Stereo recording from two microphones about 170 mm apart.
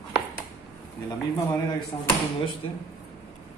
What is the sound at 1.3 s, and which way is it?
Speech, 20° left (ahead or behind).